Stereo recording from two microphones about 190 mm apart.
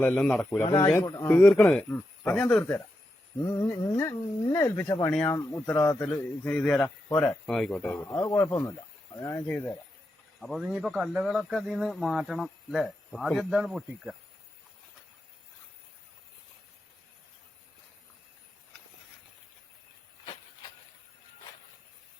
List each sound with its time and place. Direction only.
0.0 s speech: 10° left (ahead or behind)
10.4 s speech: centre (ahead or behind)